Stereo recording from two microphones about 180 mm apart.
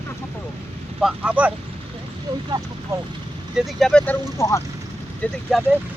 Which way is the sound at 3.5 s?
5° left (ahead or behind).